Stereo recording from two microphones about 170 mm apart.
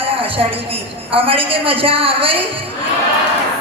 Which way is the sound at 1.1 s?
35° right (ahead or behind).